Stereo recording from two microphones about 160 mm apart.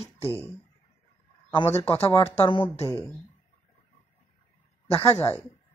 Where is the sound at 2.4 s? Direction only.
35° left (ahead or behind).